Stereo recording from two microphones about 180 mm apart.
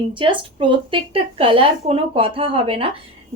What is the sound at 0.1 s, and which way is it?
A woman's voice, 25° right (ahead or behind).